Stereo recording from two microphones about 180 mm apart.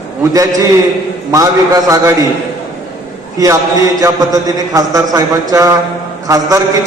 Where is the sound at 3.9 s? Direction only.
20° right (ahead or behind).